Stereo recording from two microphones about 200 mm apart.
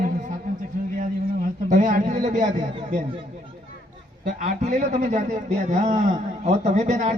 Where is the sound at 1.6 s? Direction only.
40° right (ahead or behind).